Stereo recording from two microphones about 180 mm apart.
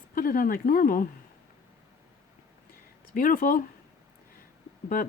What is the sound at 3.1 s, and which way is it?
Speech, 50° left (ahead or behind).